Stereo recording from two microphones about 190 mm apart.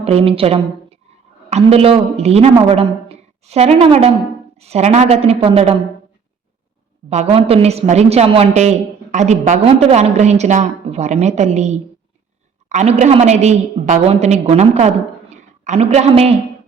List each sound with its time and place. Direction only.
0.0 s a woman's voice: 30° right (ahead or behind)
7.1 s a woman's voice: 35° right (ahead or behind)